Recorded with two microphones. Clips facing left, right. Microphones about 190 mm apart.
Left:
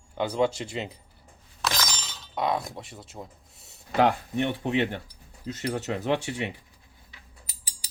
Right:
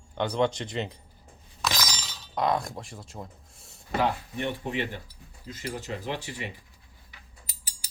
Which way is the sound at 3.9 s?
75° left (ahead or behind).